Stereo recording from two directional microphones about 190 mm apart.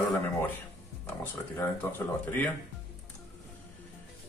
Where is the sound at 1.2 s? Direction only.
10° left (ahead or behind).